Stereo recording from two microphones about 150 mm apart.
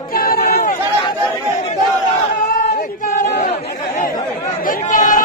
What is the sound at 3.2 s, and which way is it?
Chatter, 60° left (ahead or behind).